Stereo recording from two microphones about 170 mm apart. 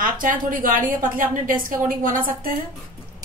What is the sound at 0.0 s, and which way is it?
A woman's voice, 55° right (ahead or behind).